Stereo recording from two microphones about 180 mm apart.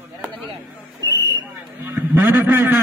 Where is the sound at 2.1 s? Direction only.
10° right (ahead or behind).